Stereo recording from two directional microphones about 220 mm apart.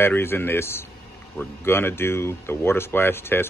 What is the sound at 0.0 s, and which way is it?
Speech, 10° left (ahead or behind).